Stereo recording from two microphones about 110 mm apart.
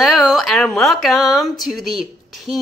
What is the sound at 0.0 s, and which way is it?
Speech, centre (ahead or behind).